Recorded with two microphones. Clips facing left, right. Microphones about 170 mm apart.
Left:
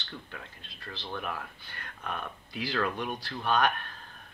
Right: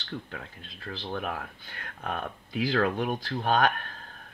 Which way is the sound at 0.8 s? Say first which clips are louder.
Right 4 dB; 50° right (ahead or behind).